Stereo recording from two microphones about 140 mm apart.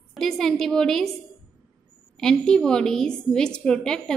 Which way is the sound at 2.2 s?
5° left (ahead or behind).